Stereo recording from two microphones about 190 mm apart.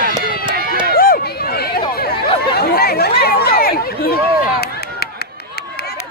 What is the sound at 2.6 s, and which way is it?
Chatter, 55° left (ahead or behind).